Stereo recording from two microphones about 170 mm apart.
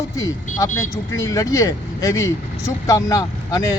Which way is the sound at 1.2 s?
20° left (ahead or behind).